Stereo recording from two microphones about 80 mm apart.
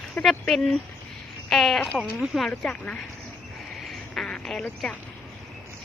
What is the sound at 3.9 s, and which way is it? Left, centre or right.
Duck, centre.